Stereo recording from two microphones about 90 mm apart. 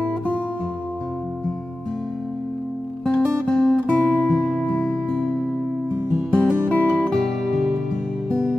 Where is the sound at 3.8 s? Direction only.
20° left (ahead or behind).